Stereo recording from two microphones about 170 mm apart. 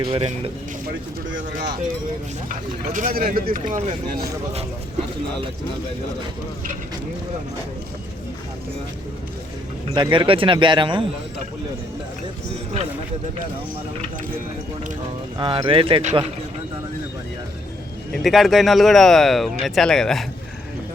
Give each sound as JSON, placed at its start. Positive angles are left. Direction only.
{"t": 0.0, "sound": "speech", "side_deg": -30}
{"t": 2.5, "sound": "speech", "side_deg": -50}
{"t": 9.9, "sound": "speech", "side_deg": -30}
{"t": 15.4, "sound": "speech", "side_deg": -30}
{"t": 18.1, "sound": "speech", "side_deg": 0}